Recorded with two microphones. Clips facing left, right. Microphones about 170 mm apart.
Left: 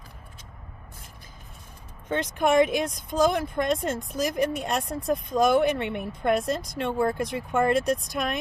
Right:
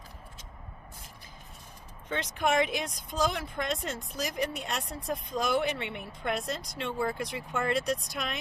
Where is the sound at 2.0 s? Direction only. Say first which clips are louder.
Left 6 dB; 50° left (ahead or behind).